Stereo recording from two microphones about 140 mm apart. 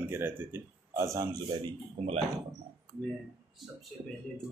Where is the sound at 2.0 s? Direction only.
40° right (ahead or behind).